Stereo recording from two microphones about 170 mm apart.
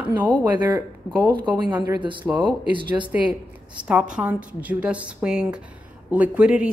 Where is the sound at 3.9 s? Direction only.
5° right (ahead or behind).